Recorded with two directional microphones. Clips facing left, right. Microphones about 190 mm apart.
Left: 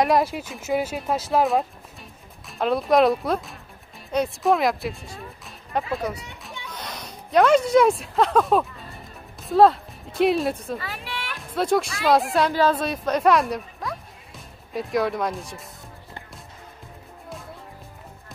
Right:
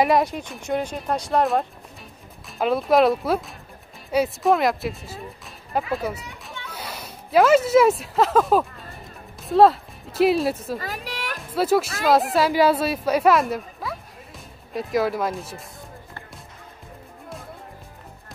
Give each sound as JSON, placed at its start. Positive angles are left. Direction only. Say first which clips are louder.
{"t": 0.0, "sound": "speech", "louder": "right 1 dB", "side_deg": 0}
{"t": 10.8, "sound": "music", "louder": "right 2 dB", "side_deg": -40}
{"t": 11.5, "sound": "a woman's voice", "louder": "right 2 dB", "side_deg": -5}